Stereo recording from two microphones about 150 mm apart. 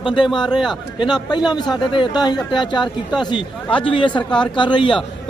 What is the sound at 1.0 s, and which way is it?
A man's voice, 30° left (ahead or behind).